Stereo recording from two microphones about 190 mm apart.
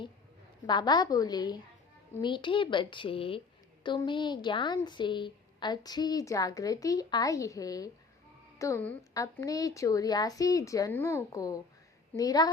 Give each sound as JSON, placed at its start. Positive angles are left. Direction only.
{"t": 0.7, "sound": "a woman's voice", "side_deg": 20}